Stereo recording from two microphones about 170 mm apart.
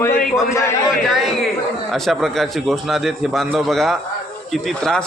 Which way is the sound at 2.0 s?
Centre (ahead or behind).